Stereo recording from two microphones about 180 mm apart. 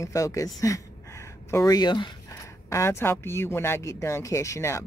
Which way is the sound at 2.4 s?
15° left (ahead or behind).